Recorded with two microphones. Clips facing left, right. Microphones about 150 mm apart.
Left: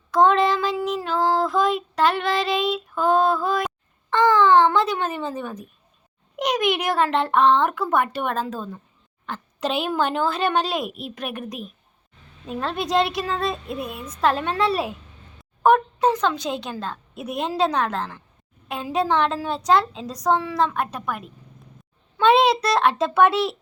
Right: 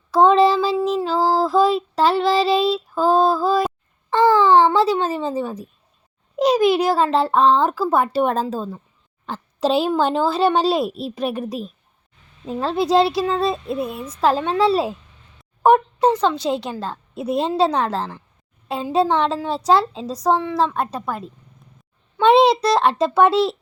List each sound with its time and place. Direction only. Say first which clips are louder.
0.3 s child singing: right 5 dB; 30° right (ahead or behind)
1.4 s female singing: right 4 dB; 30° right (ahead or behind)
4.1 s a sound: right 2 dB; 10° right (ahead or behind)
4.9 s a woman's voice: right 5 dB; 30° right (ahead or behind)
12.5 s a child's voice: right 6 dB; 25° right (ahead or behind)
20.1 s a woman's voice: right 2 dB; centre (ahead or behind)
20.7 s a child's voice: right 3 dB; 25° right (ahead or behind)